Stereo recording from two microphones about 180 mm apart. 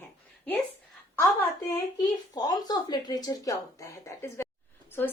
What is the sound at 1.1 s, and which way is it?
Speech, 15° left (ahead or behind).